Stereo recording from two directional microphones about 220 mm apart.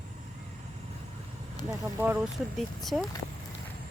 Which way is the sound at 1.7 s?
10° right (ahead or behind).